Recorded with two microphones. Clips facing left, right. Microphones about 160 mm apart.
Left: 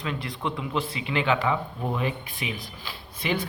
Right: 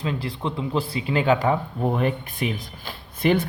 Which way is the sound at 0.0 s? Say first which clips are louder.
Right 3 dB; 30° right (ahead or behind).